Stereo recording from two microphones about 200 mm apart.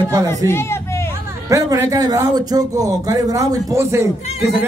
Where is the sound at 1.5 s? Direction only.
15° right (ahead or behind).